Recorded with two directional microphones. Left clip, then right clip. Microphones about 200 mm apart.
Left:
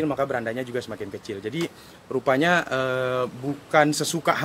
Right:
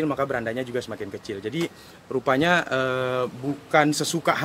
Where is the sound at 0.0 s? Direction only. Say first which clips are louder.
Even; centre (ahead or behind).